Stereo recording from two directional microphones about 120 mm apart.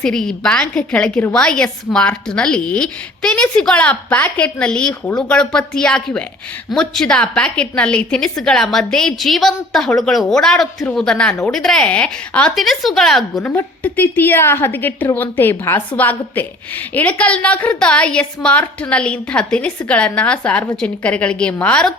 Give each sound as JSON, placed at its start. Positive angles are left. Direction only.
{"t": 0.0, "sound": "a woman's voice", "side_deg": 5}
{"t": 13.4, "sound": "a woman's voice", "side_deg": 15}